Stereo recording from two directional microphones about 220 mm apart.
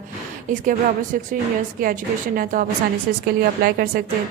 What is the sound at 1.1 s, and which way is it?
A woman's voice, 40° right (ahead or behind).